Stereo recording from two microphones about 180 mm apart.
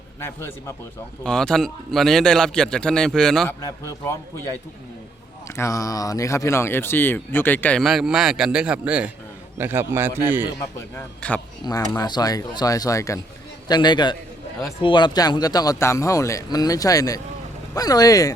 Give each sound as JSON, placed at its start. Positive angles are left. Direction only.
{"t": 0.2, "sound": "a man's voice", "side_deg": 10}
{"t": 3.8, "sound": "speech", "side_deg": 15}
{"t": 5.5, "sound": "a man's voice", "side_deg": 15}
{"t": 10.6, "sound": "speech", "side_deg": 10}